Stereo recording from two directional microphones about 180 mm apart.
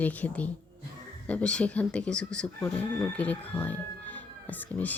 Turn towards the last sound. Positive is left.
turn(degrees=10)  # may be behind; listen again after turning